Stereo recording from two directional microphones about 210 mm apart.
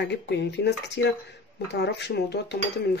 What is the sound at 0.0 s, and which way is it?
Speech, 55° left (ahead or behind).